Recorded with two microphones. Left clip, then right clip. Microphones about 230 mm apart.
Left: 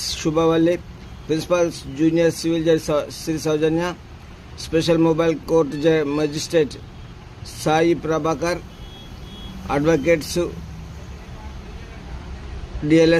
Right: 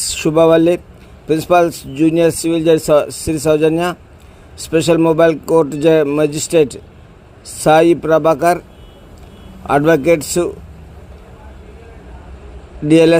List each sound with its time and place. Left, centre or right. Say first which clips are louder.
0.0 s speech: right 8 dB; centre
9.6 s speech: right 6 dB; centre
12.9 s speech: right 5 dB; centre